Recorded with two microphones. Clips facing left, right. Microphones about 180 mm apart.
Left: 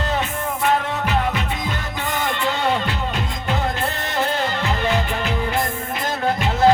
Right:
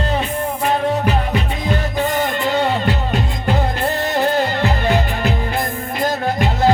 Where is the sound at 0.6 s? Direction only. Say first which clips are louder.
Right 3 dB; 35° right (ahead or behind).